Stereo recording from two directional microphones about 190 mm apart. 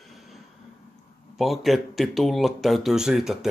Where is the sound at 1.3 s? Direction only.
Centre (ahead or behind).